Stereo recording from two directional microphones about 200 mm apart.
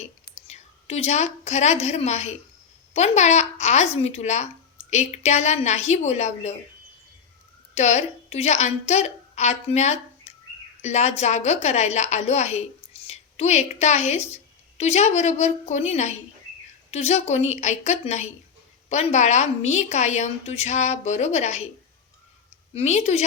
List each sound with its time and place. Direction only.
0.4 s a woman's voice: 30° left (ahead or behind)
7.8 s a woman's voice: 35° left (ahead or behind)
22.7 s a woman's voice: 30° left (ahead or behind)